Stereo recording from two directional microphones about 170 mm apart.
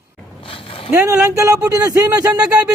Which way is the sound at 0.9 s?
15° right (ahead or behind).